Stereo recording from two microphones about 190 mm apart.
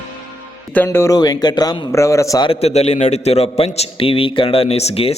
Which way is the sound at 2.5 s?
35° left (ahead or behind).